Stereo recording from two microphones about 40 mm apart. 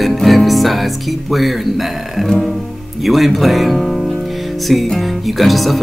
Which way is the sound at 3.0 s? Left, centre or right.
Centre.